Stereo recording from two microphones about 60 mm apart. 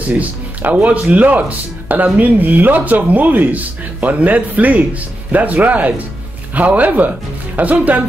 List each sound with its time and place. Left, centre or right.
0.2 s speech: right